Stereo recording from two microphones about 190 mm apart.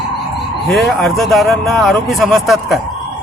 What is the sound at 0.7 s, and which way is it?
Speech, centre (ahead or behind).